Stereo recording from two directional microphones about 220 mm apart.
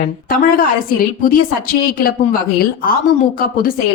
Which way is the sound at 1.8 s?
40° left (ahead or behind).